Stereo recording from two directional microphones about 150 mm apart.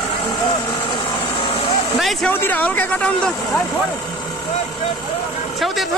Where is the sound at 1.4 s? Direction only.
35° left (ahead or behind).